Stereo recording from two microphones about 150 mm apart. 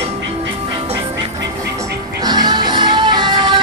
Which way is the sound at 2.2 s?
30° right (ahead or behind).